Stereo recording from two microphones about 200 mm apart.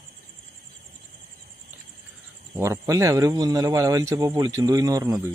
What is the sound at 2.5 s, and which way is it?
Speech, 15° right (ahead or behind).